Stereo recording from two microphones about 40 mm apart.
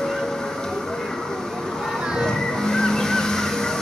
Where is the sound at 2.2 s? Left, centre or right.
Centre.